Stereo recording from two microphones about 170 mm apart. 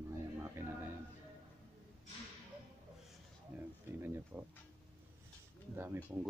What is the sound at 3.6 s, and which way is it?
Speech, 15° right (ahead or behind).